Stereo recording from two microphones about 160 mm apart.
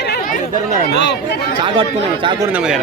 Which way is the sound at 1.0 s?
90° left.